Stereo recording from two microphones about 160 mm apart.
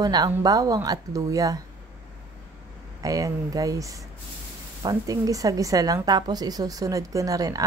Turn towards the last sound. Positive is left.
turn(degrees=-20)  # may be behind; listen again after turning